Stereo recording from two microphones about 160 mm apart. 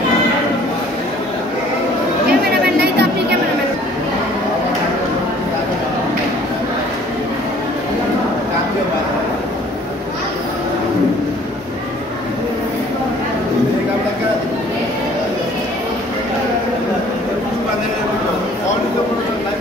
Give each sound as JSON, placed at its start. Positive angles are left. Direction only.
{"t": 2.6, "sound": "chatter", "side_deg": -90}